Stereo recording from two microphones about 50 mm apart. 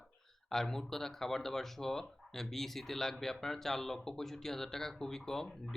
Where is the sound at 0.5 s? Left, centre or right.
Centre.